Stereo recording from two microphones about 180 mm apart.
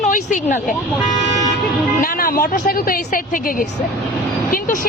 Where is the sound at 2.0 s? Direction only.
55° left (ahead or behind).